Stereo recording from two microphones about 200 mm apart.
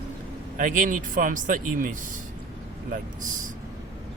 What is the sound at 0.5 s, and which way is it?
Speech, 40° right (ahead or behind).